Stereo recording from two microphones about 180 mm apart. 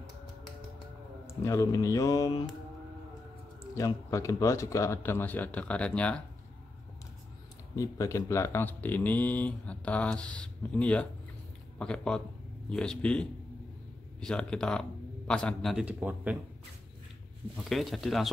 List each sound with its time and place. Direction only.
1.2 s speech: 15° left (ahead or behind)
3.7 s speech: 15° left (ahead or behind)
7.7 s a man's voice: 15° left (ahead or behind); by 16.3 s 10° right (ahead or behind)
17.6 s a man's voice: centre (ahead or behind)